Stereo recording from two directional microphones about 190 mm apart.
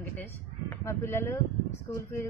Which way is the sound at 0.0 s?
10° left (ahead or behind).